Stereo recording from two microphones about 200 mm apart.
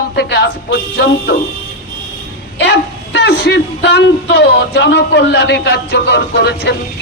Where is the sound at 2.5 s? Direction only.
60° left (ahead or behind).